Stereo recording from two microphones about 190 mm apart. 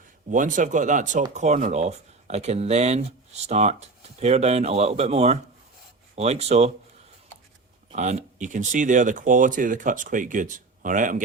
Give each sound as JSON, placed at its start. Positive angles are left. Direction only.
{"t": 0.3, "sound": "speech", "side_deg": -40}
{"t": 7.9, "sound": "speech", "side_deg": -40}